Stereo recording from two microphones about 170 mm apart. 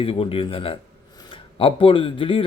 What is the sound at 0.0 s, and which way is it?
Speech, 35° left (ahead or behind).